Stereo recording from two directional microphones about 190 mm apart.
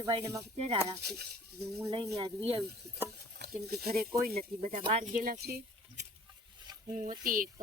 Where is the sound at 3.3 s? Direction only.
60° right (ahead or behind).